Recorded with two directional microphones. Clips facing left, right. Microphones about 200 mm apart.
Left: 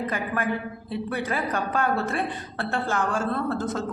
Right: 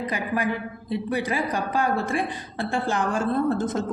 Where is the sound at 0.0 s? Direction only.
15° right (ahead or behind).